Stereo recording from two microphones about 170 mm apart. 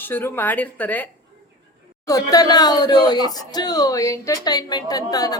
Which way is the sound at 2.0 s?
20° left (ahead or behind).